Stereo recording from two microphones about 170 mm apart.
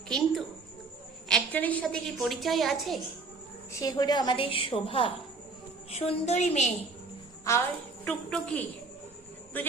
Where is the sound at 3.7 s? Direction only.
20° left (ahead or behind); by 6.7 s 40° left (ahead or behind).